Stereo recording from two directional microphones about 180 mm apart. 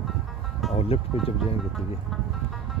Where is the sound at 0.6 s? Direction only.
Centre (ahead or behind).